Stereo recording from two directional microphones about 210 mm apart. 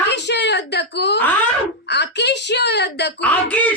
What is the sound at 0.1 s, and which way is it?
Whimper, 55° left (ahead or behind).